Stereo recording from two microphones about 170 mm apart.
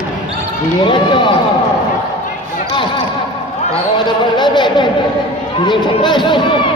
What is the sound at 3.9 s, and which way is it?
A man's voice, 25° left (ahead or behind).